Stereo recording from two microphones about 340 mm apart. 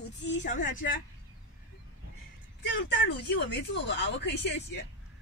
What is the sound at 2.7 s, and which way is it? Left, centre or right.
A woman's voice, left.